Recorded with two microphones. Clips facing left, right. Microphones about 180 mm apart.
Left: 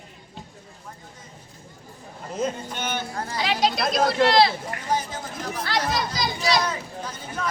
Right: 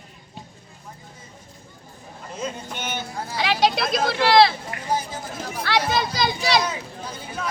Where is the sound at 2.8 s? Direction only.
10° right (ahead or behind).